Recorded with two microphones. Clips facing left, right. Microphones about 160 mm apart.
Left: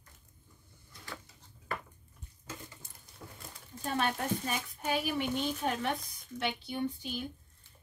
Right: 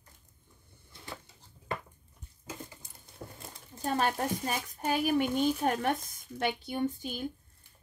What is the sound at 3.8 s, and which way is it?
A woman's voice, 40° right (ahead or behind).